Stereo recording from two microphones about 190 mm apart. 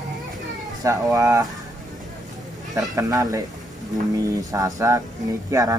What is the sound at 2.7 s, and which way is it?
Speech, 20° right (ahead or behind).